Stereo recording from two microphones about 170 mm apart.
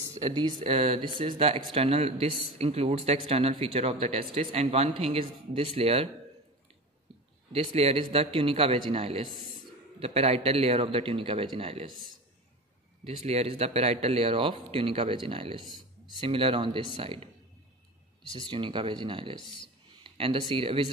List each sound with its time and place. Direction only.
0.2 s speech: 25° right (ahead or behind)
7.5 s speech: 35° right (ahead or behind)
13.0 s speech: 40° right (ahead or behind)
18.2 s speech: 30° left (ahead or behind)
18.5 s speech: 30° right (ahead or behind)
19.3 s speech: 30° left (ahead or behind)
20.0 s speech: 30° right (ahead or behind)